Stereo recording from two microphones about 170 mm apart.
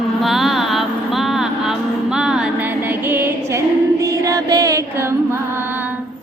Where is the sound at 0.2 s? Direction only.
Centre (ahead or behind).